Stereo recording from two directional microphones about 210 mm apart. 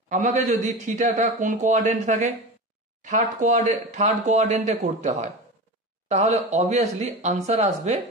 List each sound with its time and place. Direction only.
0.1 s speech: 35° right (ahead or behind)